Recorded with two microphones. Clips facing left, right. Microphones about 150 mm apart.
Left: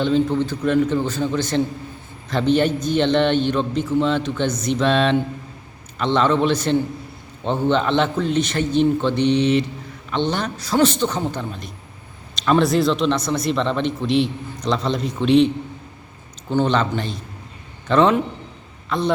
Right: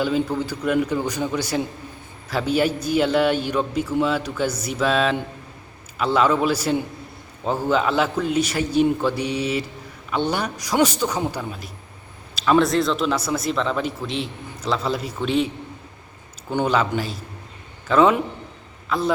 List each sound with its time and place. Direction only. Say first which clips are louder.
0.0 s a man's voice: left 3 dB; 10° right (ahead or behind)
16.5 s a man's voice: left 2 dB; 10° right (ahead or behind)